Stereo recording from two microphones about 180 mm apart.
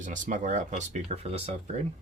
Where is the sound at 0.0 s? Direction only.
45° right (ahead or behind).